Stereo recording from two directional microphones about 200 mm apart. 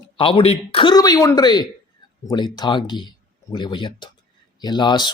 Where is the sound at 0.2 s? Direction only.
25° left (ahead or behind).